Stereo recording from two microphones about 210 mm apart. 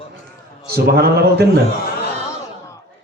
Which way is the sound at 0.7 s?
50° right (ahead or behind).